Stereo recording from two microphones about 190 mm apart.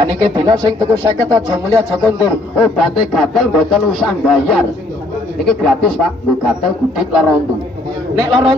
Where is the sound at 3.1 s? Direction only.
Centre (ahead or behind).